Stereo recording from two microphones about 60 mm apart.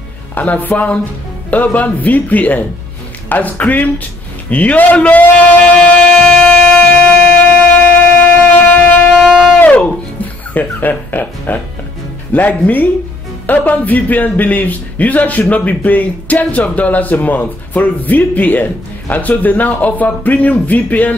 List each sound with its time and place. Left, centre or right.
0.3 s speech: left
5.7 s music: centre
9.1 s music: centre
9.6 s music: centre
10.5 s speech: left